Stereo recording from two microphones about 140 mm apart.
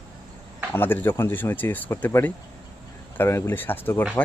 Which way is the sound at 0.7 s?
15° left (ahead or behind).